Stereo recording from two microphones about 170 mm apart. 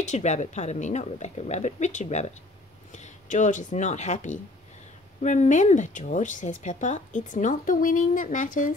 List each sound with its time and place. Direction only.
0.0 s speech: 45° left (ahead or behind)